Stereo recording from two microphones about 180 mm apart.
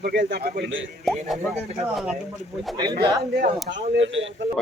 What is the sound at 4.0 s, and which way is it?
Speech, 90° right.